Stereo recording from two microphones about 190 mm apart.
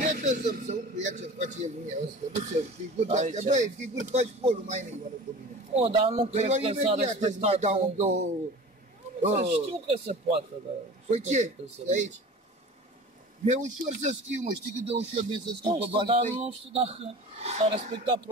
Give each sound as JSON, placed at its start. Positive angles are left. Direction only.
{"t": 0.0, "sound": "speech", "side_deg": -40}
{"t": 9.3, "sound": "speech", "side_deg": -35}
{"t": 13.5, "sound": "speech", "side_deg": -40}